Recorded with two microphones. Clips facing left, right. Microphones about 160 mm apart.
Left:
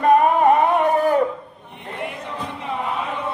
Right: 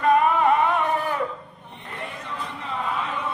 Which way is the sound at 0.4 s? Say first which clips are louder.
Left 5 dB; 45° left (ahead or behind).